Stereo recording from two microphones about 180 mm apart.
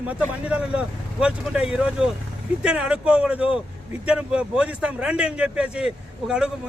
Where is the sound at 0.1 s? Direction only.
5° right (ahead or behind).